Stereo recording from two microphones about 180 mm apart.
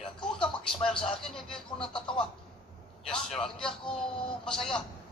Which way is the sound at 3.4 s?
5° left (ahead or behind).